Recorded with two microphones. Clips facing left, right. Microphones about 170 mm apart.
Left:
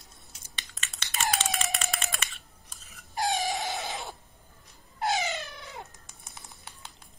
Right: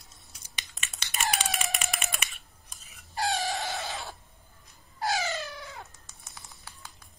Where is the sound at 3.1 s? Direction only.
20° left (ahead or behind).